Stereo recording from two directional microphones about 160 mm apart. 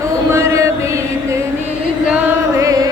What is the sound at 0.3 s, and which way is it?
Music, 20° right (ahead or behind).